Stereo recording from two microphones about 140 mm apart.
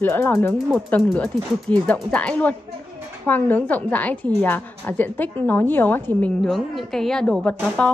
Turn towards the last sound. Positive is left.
turn(degrees=10)  # may be behind; listen again after turning